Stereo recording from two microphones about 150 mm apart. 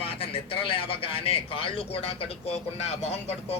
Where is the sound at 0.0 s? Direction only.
40° left (ahead or behind).